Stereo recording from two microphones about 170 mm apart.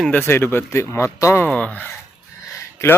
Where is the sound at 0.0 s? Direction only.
10° left (ahead or behind).